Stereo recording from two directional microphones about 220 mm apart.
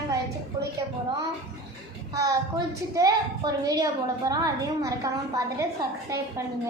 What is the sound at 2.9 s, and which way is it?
A woman's voice, 15° right (ahead or behind).